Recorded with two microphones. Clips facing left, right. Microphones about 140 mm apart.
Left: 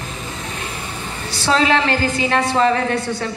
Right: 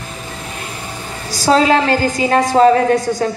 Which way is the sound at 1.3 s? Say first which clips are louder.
Right 5 dB; 40° right (ahead or behind).